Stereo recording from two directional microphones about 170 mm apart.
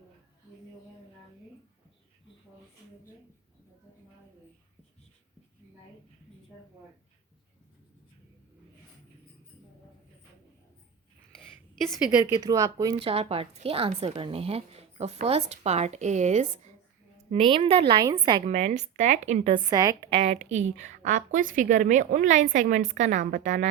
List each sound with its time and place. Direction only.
12.3 s a woman's voice: 25° right (ahead or behind)
18.4 s speech: 40° right (ahead or behind)
19.5 s a woman's voice: 25° right (ahead or behind)
20.1 s speech: 40° right (ahead or behind)